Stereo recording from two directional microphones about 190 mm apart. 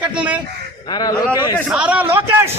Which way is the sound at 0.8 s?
20° left (ahead or behind).